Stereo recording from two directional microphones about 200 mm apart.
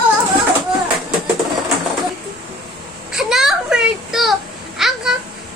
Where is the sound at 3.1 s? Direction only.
Centre (ahead or behind).